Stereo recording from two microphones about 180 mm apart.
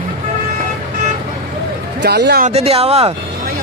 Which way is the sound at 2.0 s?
70° right (ahead or behind).